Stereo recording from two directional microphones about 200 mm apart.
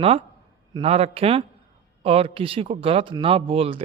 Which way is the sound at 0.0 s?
30° right (ahead or behind).